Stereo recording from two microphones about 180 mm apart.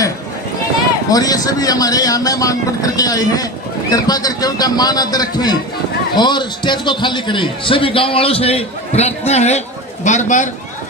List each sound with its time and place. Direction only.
1.1 s a man's voice: 20° left (ahead or behind); by 10.5 s 45° left (ahead or behind)